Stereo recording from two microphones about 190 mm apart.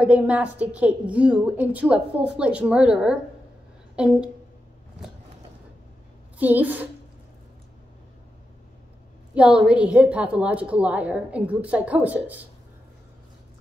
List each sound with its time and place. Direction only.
0.0 s a woman's voice: 5° right (ahead or behind)
6.3 s a woman's voice: 10° right (ahead or behind)
9.3 s a woman's voice: 5° right (ahead or behind)